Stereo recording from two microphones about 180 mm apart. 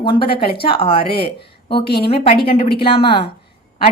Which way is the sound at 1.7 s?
65° left (ahead or behind).